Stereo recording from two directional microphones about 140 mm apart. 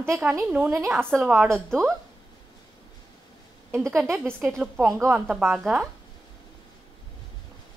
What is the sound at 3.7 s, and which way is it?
A woman's voice, 20° right (ahead or behind).